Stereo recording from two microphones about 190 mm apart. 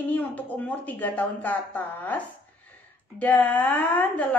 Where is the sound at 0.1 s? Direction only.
10° left (ahead or behind).